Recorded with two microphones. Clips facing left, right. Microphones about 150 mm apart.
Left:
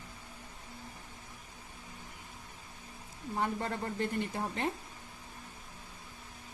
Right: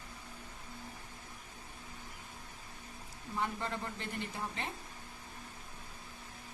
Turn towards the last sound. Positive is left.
turn(degrees=50)  # may be behind; listen again after turning